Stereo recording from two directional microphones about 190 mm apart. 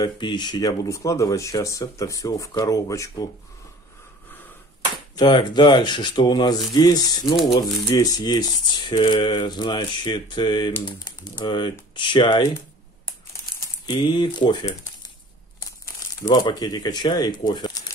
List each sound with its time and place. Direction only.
0.0 s speech: 25° left (ahead or behind)
5.1 s speech: 25° left (ahead or behind)
13.8 s speech: 25° left (ahead or behind)
16.2 s speech: 20° left (ahead or behind)